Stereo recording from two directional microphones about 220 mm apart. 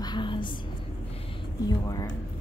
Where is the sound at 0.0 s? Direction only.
20° left (ahead or behind).